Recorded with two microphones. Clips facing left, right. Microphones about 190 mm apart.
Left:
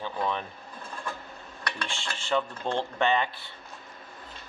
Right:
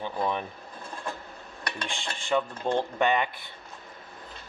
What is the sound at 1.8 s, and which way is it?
Speech, 15° right (ahead or behind).